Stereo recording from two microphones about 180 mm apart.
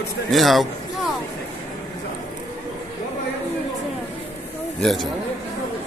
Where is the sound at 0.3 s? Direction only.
Centre (ahead or behind).